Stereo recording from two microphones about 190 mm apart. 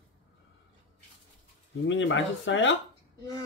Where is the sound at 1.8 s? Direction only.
80° left.